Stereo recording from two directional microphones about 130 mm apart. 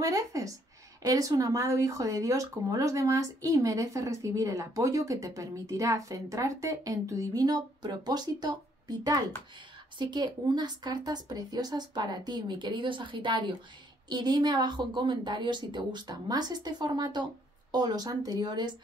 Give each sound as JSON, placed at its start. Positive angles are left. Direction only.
{"t": 0.0, "sound": "speech", "side_deg": -25}